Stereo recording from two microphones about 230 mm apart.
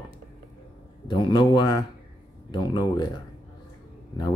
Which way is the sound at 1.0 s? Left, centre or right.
Centre.